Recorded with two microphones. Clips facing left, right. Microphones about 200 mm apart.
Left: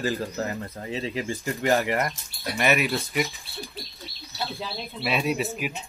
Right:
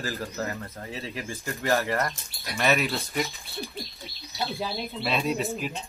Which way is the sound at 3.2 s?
Centre (ahead or behind).